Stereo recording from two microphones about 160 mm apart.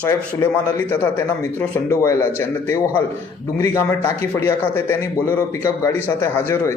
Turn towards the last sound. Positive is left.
turn(degrees=15)  # may be behind; listen again after turning